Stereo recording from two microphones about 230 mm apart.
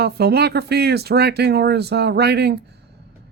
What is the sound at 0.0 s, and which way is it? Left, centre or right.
Speech, right.